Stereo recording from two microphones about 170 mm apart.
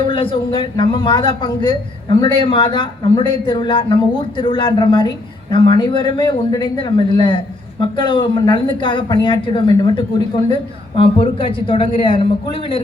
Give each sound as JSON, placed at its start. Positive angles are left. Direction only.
{"t": 0.0, "sound": "a woman's voice", "side_deg": 30}